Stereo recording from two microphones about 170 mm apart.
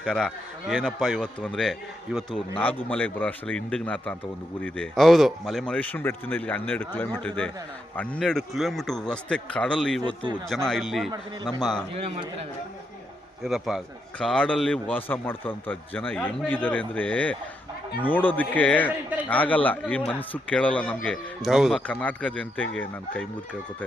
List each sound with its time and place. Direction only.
0.0 s a man's voice: 5° left (ahead or behind)
11.9 s a man's voice: 35° right (ahead or behind)
13.4 s speech: centre (ahead or behind)